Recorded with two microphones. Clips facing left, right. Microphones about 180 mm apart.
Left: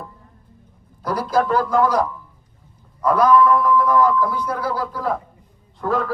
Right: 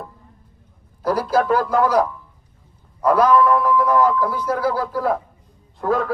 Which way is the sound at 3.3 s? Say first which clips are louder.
Left 1 dB; 40° right (ahead or behind).